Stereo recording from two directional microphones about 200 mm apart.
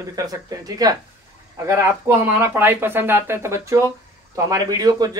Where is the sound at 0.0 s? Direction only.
20° right (ahead or behind).